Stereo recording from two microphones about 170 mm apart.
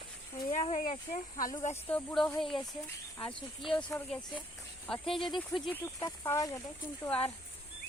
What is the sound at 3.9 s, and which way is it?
Speech, 15° left (ahead or behind).